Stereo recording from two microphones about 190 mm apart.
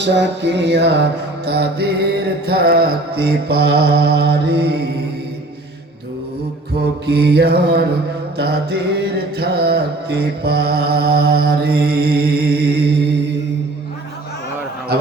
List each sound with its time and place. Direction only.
0.0 s mantra: 65° right (ahead or behind)
6.7 s mantra: 60° right (ahead or behind)